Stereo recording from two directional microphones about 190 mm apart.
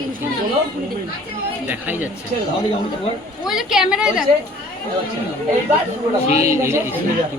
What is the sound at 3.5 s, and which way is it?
Speech, centre (ahead or behind).